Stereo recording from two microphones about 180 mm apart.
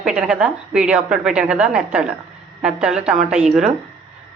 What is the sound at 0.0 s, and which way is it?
A man's voice, 5° right (ahead or behind).